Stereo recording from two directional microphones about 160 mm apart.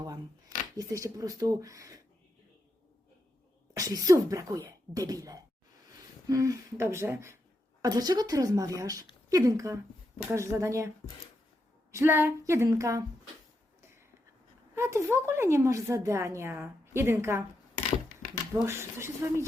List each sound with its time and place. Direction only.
0.8 s speech: 20° right (ahead or behind)
3.8 s speech: 20° right (ahead or behind)
14.8 s speech: 15° right (ahead or behind)
18.6 s speech: 15° right (ahead or behind)